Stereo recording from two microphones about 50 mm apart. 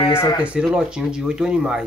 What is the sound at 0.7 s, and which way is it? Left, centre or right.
Speech, centre.